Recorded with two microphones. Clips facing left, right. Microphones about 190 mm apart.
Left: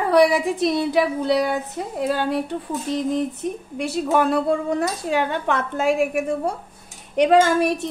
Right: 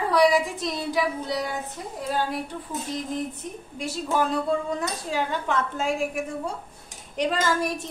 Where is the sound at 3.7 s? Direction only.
65° left (ahead or behind).